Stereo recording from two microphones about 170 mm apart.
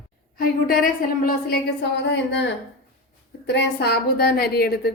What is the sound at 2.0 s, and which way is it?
A woman's voice, 90° left.